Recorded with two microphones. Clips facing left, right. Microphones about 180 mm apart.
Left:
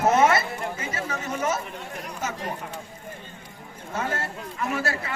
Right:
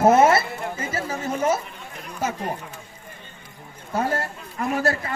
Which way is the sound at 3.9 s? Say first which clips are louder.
Right 5 dB; 35° right (ahead or behind).